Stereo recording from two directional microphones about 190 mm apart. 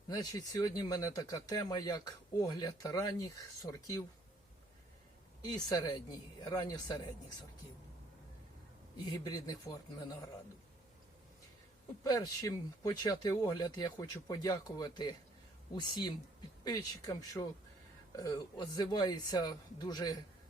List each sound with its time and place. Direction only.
0.1 s speech: 20° left (ahead or behind)
5.4 s speech: 20° left (ahead or behind)
9.0 s speech: 20° left (ahead or behind)
12.0 s speech: 20° left (ahead or behind)